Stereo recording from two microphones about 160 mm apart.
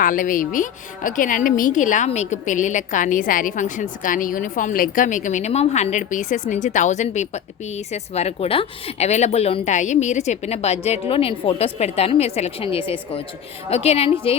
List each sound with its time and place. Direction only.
0.0 s a woman's voice: 55° left (ahead or behind); by 14.3 s 40° left (ahead or behind)